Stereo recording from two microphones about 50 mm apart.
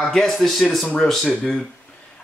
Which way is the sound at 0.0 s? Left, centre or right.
Centre.